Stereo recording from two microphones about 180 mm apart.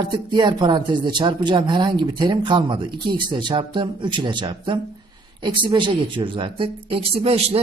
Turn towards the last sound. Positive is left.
turn(degrees=-35)  # may be behind; listen again after turning